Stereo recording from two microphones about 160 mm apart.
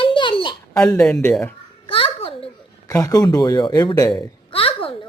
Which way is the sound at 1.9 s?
35° left (ahead or behind).